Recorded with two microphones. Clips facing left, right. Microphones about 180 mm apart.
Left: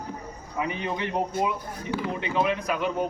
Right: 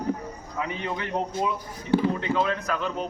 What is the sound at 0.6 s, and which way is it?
A child's voice, 20° left (ahead or behind).